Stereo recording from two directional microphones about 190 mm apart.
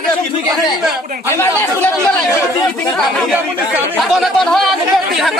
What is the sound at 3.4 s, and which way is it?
A man's voice, 10° right (ahead or behind).